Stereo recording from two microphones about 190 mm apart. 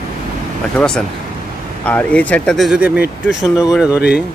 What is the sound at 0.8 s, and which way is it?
Speech, 5° left (ahead or behind).